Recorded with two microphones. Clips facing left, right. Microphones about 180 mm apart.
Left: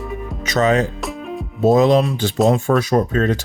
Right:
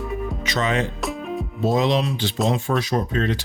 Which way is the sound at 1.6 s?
45° left (ahead or behind).